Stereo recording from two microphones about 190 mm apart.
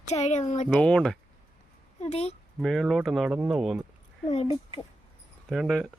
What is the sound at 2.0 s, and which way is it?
Speech, 35° left (ahead or behind).